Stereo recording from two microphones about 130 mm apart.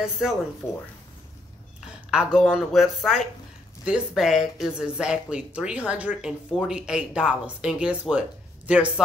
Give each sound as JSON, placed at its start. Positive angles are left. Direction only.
{"t": 0.0, "sound": "speech", "side_deg": -5}
{"t": 0.6, "sound": "speech", "side_deg": 15}
{"t": 2.0, "sound": "speech", "side_deg": -5}